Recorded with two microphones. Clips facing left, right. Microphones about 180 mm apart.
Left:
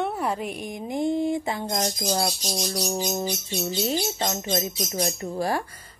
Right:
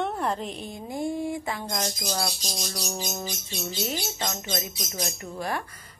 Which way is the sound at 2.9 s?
30° left (ahead or behind).